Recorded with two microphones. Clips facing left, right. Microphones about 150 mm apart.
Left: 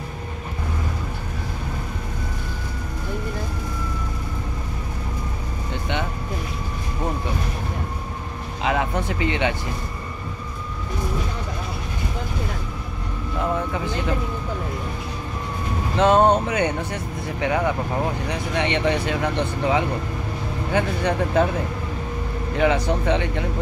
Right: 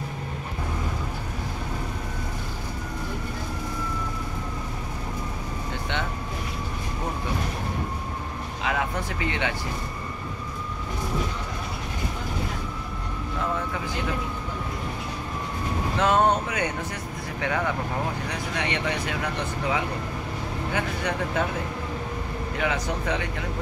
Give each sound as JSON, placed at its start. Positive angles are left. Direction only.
{"t": 8.6, "sound": "a sound", "side_deg": 25}
{"t": 16.0, "sound": "vehicle", "side_deg": 25}
{"t": 17.4, "sound": "speech", "side_deg": 20}
{"t": 22.6, "sound": "speech", "side_deg": 30}